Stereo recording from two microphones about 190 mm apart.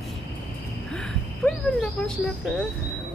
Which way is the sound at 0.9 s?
5° left (ahead or behind).